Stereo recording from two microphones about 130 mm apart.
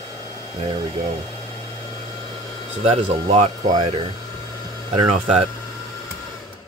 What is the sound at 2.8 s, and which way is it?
Speech, 60° right (ahead or behind).